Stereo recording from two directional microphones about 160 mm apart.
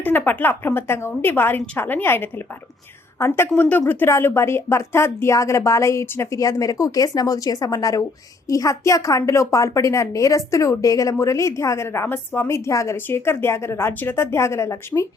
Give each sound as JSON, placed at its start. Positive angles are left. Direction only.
{"t": 0.0, "sound": "a woman's voice", "side_deg": 10}